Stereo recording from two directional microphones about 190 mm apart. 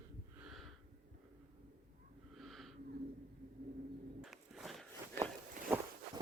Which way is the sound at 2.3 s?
Centre (ahead or behind).